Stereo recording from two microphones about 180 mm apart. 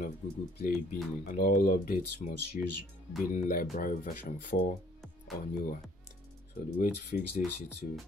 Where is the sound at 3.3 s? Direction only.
50° left (ahead or behind).